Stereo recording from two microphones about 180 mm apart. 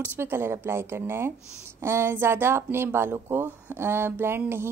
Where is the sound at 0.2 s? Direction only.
15° right (ahead or behind).